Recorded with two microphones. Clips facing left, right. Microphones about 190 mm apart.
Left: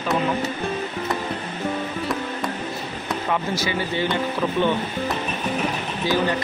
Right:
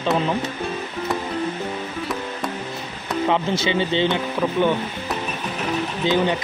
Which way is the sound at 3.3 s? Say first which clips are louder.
Right 3 dB; 20° right (ahead or behind).